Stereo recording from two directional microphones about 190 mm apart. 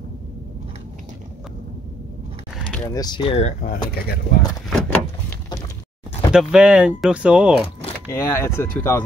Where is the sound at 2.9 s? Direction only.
20° left (ahead or behind).